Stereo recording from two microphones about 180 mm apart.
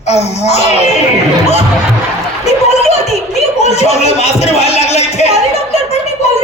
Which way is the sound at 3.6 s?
35° left (ahead or behind).